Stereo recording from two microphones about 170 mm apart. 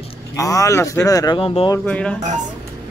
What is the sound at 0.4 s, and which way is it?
Speech, 20° left (ahead or behind).